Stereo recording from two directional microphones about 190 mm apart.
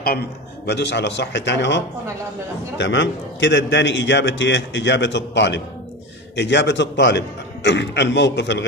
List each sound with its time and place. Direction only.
0.7 s a man's voice: 65° left (ahead or behind)
2.8 s a man's voice: 75° left (ahead or behind)